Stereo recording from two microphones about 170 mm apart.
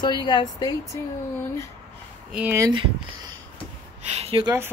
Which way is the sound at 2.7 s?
30° right (ahead or behind).